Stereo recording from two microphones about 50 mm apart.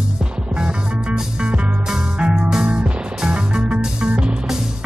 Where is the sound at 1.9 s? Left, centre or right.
Centre.